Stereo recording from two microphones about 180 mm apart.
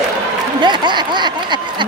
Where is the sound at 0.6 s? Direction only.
25° right (ahead or behind).